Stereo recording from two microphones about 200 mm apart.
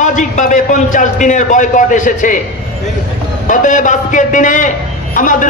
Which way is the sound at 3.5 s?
40° left (ahead or behind).